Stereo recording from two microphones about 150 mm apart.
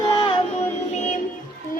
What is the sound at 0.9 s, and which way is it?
Music, 55° left (ahead or behind).